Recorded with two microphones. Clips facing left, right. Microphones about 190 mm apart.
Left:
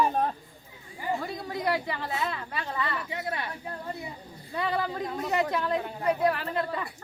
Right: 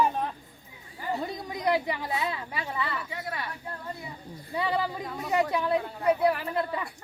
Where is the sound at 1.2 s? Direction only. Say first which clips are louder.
Even; 20° right (ahead or behind).